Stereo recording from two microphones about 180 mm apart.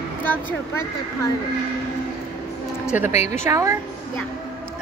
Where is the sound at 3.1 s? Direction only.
40° left (ahead or behind).